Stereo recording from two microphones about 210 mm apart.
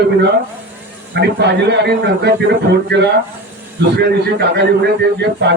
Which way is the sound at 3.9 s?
55° right (ahead or behind).